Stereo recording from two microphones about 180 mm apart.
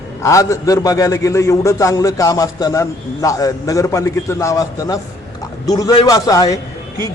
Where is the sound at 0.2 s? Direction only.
15° left (ahead or behind).